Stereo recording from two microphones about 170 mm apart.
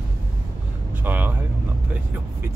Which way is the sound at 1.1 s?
10° right (ahead or behind).